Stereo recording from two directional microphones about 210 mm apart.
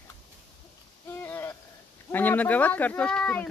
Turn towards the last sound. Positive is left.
turn(degrees=5)  # may be behind; listen again after turning